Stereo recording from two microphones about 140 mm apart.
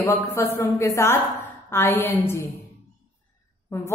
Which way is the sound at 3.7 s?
20° left (ahead or behind).